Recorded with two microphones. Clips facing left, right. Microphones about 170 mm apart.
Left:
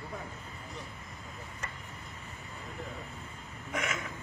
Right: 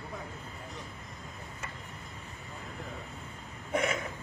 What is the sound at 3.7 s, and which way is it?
Burping, 30° right (ahead or behind).